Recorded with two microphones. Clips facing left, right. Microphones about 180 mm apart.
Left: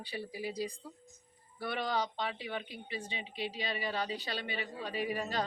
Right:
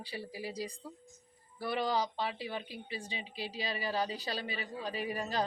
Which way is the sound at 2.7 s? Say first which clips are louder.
Even; 35° right (ahead or behind).